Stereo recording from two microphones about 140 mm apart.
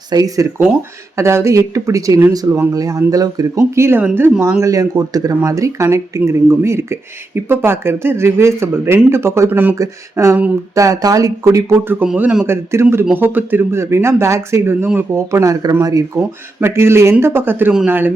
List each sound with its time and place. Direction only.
0.1 s speech: 25° right (ahead or behind); by 4.6 s 10° right (ahead or behind)
4.6 s speech: 25° right (ahead or behind)